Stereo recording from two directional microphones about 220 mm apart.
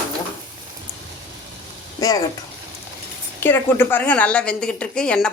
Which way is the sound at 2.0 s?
15° left (ahead or behind).